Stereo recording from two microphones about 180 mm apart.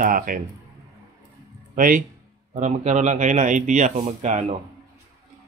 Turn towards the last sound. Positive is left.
turn(degrees=-40)  # may be behind; listen again after turning